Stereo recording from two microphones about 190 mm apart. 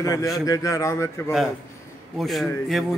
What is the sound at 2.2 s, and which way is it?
Speech, centre (ahead or behind).